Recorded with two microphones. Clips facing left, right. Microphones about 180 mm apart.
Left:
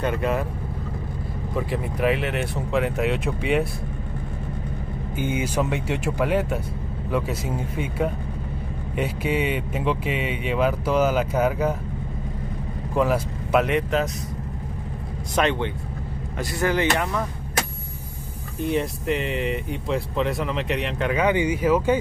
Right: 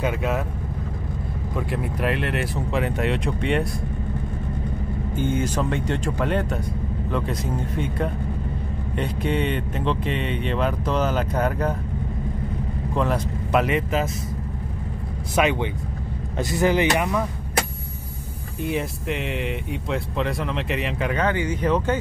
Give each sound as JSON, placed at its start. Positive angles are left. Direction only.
{"t": 0.0, "sound": "speech", "side_deg": 0}
{"t": 1.6, "sound": "speech", "side_deg": 0}
{"t": 5.1, "sound": "speech", "side_deg": 10}
{"t": 12.9, "sound": "speech", "side_deg": 5}
{"t": 15.3, "sound": "speech", "side_deg": -10}
{"t": 18.6, "sound": "speech", "side_deg": 0}
{"t": 21.2, "sound": "speech", "side_deg": 15}